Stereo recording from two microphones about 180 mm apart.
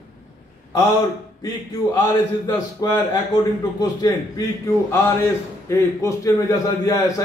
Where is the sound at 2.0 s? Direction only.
20° left (ahead or behind).